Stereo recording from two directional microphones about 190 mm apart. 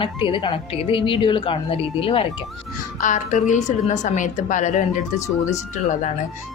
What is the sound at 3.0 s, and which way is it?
A woman's voice, 40° left (ahead or behind).